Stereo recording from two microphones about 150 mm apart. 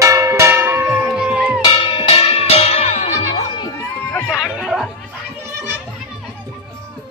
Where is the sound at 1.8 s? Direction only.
35° left (ahead or behind).